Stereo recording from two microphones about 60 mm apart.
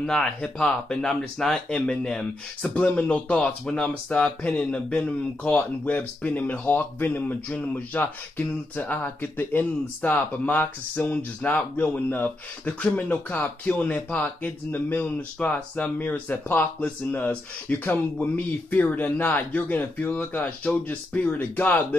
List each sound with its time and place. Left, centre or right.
0.0 s speech: centre
2.7 s speech: left
17.6 s speech: left